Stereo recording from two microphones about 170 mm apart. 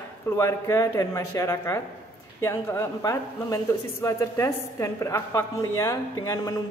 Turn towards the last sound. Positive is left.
turn(degrees=20)  # may be behind; listen again after turning